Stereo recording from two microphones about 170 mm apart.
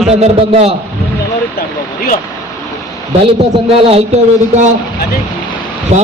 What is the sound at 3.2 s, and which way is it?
Speech, 35° right (ahead or behind).